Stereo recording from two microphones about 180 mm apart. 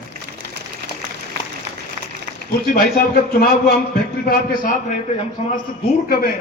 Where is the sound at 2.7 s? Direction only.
55° left (ahead or behind).